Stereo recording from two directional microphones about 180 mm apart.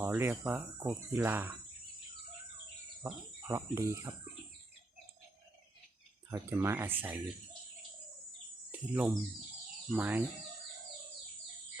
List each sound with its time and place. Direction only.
0.0 s speech: 10° right (ahead or behind)
3.0 s speech: 15° right (ahead or behind)
6.3 s speech: 15° right (ahead or behind)
8.7 s speech: 10° right (ahead or behind)